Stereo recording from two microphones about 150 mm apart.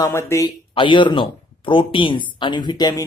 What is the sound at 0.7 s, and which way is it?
Speech, 35° left (ahead or behind).